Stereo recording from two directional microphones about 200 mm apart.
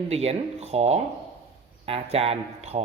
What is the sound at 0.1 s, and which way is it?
A man's voice, 30° right (ahead or behind).